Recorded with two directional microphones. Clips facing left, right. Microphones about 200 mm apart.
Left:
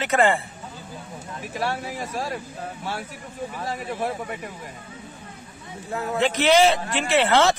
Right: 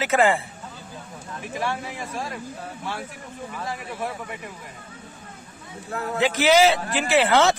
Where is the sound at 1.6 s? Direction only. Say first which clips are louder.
Left 2 dB; 40° left (ahead or behind).